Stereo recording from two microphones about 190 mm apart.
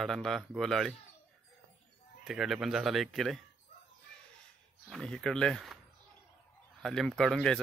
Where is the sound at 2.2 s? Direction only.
Centre (ahead or behind).